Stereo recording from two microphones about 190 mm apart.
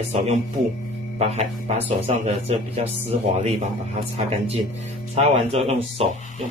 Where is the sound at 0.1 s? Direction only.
35° right (ahead or behind).